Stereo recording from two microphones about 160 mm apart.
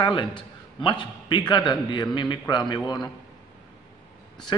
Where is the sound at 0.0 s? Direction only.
30° left (ahead or behind).